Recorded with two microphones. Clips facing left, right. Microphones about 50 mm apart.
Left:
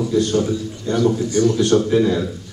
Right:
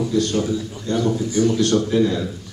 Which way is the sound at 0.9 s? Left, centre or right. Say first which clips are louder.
Left 2 dB; left.